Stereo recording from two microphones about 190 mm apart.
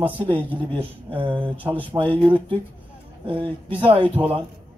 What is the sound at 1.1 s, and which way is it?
A man's voice, 25° right (ahead or behind).